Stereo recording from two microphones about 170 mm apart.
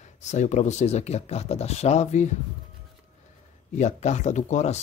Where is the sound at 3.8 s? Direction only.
40° left (ahead or behind).